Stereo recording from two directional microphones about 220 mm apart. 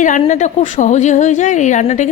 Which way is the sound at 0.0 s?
35° left (ahead or behind).